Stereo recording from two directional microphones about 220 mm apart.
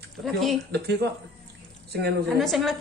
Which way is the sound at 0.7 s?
50° right (ahead or behind).